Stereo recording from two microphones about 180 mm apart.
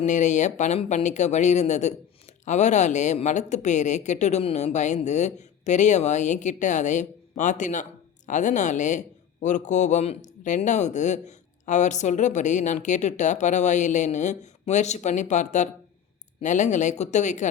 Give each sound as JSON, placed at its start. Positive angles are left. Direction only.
{"t": 0.0, "sound": "a man's voice", "side_deg": 40}